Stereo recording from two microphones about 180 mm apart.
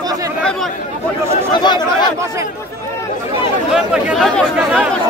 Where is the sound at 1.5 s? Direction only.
25° left (ahead or behind).